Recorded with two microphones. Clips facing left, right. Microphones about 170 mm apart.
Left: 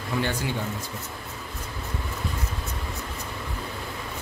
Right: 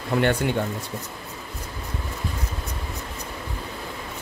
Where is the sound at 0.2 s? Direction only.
60° right (ahead or behind).